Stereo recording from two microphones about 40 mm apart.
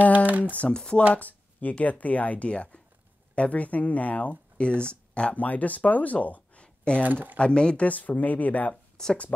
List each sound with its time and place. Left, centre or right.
0.3 s speech: right
0.7 s speech: centre
1.1 s a sound: left
1.9 s speech: left
4.6 s speech: left
5.3 s speech: left
6.2 s a sound: left
6.6 s a sound: left
7.3 s speech: left
7.8 s speech: left
8.9 s speech: centre